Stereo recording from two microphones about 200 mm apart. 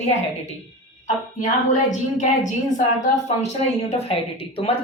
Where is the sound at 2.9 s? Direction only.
35° left (ahead or behind).